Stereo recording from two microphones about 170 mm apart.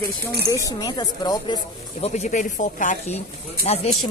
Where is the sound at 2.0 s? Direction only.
45° left (ahead or behind).